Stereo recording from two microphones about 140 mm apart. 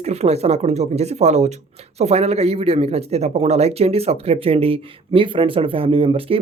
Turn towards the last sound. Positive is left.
turn(degrees=-40)  # may be behind; listen again after turning